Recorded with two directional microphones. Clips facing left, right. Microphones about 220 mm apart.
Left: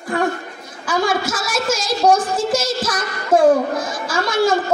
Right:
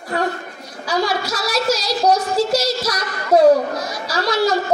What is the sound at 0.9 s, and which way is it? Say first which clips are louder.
A woman's voice: left 1 dB; 50° left (ahead or behind).